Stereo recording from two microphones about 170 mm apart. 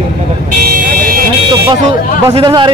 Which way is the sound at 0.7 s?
60° right (ahead or behind).